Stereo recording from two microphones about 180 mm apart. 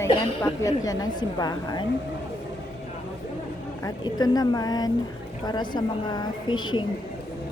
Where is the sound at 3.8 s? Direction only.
20° left (ahead or behind).